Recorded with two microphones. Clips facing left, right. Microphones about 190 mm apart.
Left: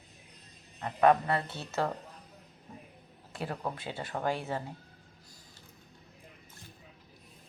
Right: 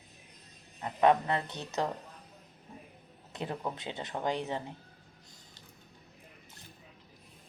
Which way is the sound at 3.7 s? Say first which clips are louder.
Left 1 dB; 20° right (ahead or behind).